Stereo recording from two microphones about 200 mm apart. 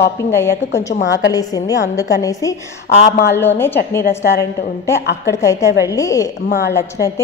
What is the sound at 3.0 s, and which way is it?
Speech, 55° left (ahead or behind).